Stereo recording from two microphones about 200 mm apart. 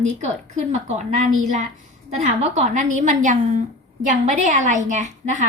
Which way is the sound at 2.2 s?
35° right (ahead or behind).